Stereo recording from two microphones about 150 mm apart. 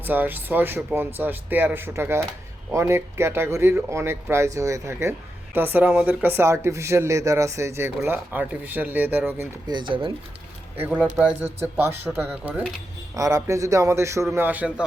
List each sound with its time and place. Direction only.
0.0 s speech: 10° right (ahead or behind)
9.6 s speech: 30° right (ahead or behind)
10.8 s speech: 10° right (ahead or behind)
13.1 s a man's voice: 20° right (ahead or behind)